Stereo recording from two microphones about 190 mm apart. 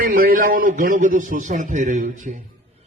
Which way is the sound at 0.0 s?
50° right (ahead or behind).